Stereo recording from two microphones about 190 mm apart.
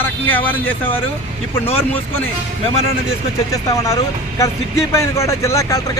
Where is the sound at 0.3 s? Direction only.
10° left (ahead or behind).